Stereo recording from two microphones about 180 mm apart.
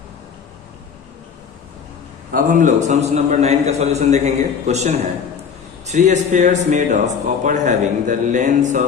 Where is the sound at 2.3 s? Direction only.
45° right (ahead or behind).